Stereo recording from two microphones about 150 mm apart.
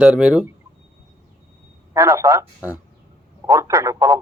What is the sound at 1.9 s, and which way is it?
A man's voice, 20° right (ahead or behind).